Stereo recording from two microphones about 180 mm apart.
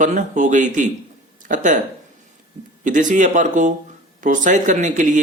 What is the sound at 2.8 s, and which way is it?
Speech, 45° right (ahead or behind).